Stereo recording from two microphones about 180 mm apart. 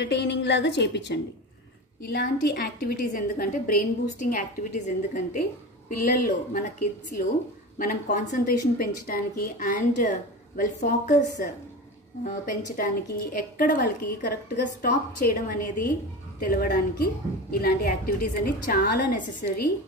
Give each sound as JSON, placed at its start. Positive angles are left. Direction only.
{"t": 0.0, "sound": "a woman's voice", "side_deg": 70}
{"t": 2.0, "sound": "a woman's voice", "side_deg": 60}
{"t": 14.3, "sound": "a woman's voice", "side_deg": 65}
{"t": 14.9, "sound": "a woman's voice", "side_deg": 50}